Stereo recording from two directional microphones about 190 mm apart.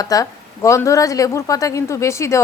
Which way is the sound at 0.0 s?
20° left (ahead or behind).